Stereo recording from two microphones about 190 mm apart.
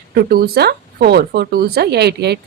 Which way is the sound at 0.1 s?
55° right (ahead or behind).